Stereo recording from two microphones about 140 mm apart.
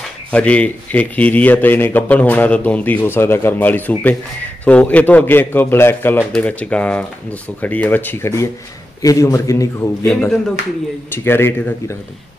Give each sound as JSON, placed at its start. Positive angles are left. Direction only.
{"t": 0.3, "sound": "a man's voice", "side_deg": 10}
{"t": 11.2, "sound": "a man's voice", "side_deg": 15}